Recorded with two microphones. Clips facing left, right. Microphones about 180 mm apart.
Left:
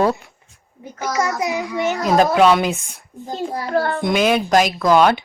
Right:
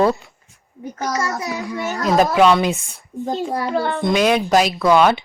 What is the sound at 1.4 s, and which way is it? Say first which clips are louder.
Speech: left 4 dB; 20° left (ahead or behind).